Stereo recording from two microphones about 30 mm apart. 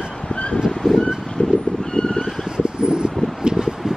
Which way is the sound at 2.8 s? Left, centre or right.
Right.